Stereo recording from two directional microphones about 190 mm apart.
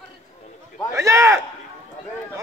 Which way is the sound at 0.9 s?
15° right (ahead or behind).